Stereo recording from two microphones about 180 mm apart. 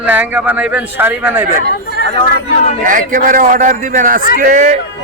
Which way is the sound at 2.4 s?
50° right (ahead or behind).